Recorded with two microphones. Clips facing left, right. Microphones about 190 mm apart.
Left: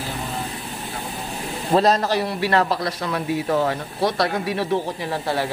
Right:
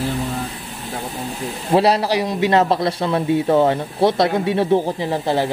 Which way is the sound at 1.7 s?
10° right (ahead or behind).